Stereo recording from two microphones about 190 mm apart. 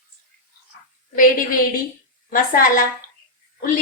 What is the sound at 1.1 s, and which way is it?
A woman's voice, 45° left (ahead or behind).